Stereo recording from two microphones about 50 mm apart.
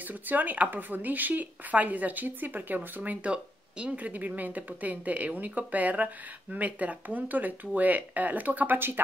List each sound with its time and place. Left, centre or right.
0.0 s speech: right
3.0 s speech: right